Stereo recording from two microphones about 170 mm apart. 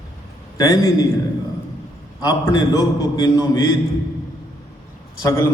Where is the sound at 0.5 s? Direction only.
20° left (ahead or behind).